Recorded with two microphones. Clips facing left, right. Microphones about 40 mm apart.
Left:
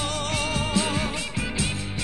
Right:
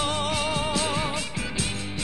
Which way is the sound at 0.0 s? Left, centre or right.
Centre.